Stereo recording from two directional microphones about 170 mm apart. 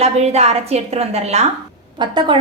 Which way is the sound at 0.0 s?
40° right (ahead or behind).